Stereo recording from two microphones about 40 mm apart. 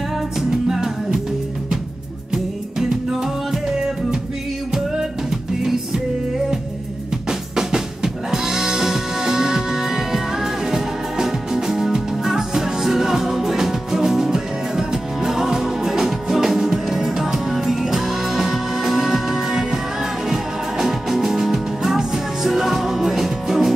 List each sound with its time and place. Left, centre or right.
0.4 s music: centre
2.3 s music: centre
7.2 s drum: centre
20.2 s music: centre